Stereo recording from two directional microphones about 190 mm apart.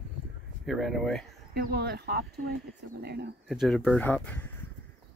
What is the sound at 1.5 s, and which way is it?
Speech, 55° right (ahead or behind).